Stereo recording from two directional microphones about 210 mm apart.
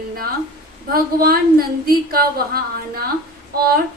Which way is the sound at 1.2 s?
45° right (ahead or behind).